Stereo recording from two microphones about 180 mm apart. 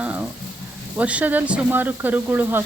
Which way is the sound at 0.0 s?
10° right (ahead or behind).